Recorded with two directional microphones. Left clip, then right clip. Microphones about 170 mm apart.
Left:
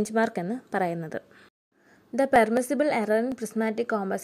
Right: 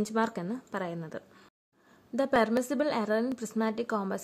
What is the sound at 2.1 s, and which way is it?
A woman's voice, 15° left (ahead or behind).